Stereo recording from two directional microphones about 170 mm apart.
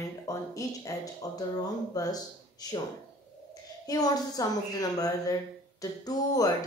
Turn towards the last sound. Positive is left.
turn(degrees=20)  # may be behind; listen again after turning